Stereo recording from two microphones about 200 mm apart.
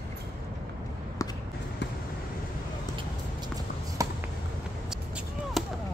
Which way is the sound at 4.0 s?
15° right (ahead or behind).